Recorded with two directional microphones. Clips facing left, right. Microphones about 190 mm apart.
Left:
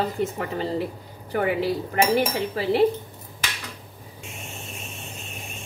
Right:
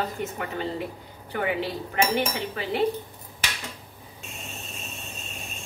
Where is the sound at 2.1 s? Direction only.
35° left (ahead or behind).